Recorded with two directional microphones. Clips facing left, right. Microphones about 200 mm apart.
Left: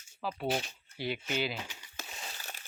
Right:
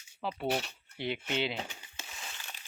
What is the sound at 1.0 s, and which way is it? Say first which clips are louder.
Speech: right 1 dB; 25° right (ahead or behind).